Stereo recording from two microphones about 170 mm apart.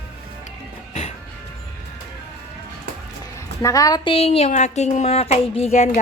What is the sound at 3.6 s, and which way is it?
Speech, 20° left (ahead or behind).